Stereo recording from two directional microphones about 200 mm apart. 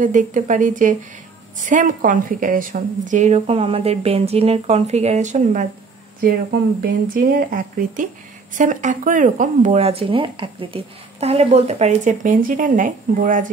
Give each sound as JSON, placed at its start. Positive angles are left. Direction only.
{"t": 0.0, "sound": "speech", "side_deg": -40}